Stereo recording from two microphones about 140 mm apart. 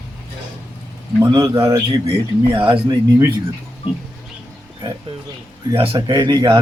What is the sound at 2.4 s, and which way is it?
Speech, 35° right (ahead or behind).